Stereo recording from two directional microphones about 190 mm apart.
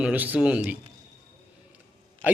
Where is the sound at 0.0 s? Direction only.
10° right (ahead or behind).